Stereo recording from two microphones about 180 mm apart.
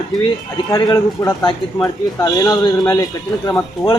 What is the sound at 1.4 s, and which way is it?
A man's voice, 20° left (ahead or behind).